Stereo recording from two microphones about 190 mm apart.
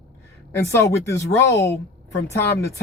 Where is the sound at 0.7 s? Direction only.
15° left (ahead or behind).